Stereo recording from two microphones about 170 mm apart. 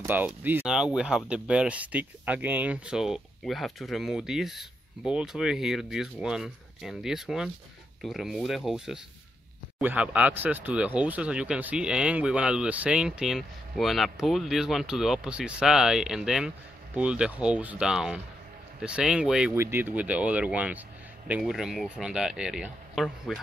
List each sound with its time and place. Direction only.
0.0 s speech: 10° right (ahead or behind)